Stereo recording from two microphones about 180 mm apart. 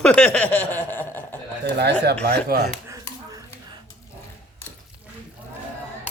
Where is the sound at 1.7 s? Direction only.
65° right (ahead or behind).